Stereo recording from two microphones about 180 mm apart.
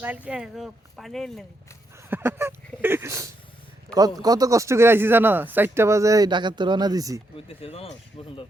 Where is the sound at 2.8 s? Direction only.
15° right (ahead or behind).